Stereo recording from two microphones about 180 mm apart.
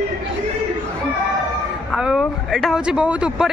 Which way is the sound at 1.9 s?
Centre (ahead or behind).